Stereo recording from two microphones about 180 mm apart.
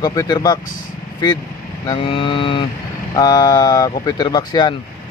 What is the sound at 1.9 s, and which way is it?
Speech, 30° left (ahead or behind).